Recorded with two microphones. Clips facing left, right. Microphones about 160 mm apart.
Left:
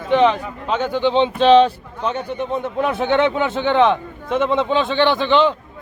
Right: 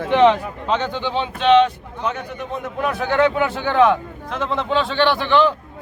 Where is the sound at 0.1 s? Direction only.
Centre (ahead or behind).